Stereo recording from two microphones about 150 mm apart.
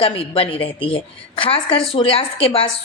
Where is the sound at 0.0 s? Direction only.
40° left (ahead or behind).